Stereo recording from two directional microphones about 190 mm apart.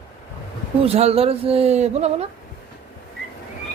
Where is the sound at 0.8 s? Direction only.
30° right (ahead or behind).